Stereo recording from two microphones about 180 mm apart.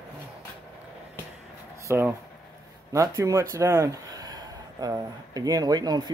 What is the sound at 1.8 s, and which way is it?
Speech, 15° right (ahead or behind).